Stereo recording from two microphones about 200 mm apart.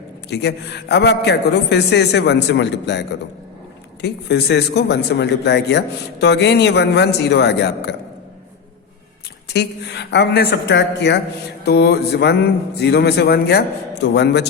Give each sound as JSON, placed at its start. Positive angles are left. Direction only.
{"t": 0.3, "sound": "speech", "side_deg": 55}
{"t": 9.5, "sound": "speech", "side_deg": 55}